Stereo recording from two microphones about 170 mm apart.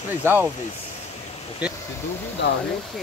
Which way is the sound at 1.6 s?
5° right (ahead or behind).